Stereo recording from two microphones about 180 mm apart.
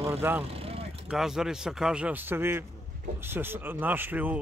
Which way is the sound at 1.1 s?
5° right (ahead or behind).